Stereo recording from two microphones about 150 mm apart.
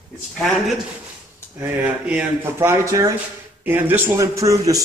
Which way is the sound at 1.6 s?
10° right (ahead or behind).